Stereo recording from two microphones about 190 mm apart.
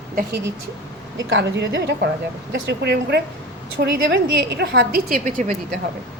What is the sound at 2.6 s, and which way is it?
A woman's voice, 65° right (ahead or behind).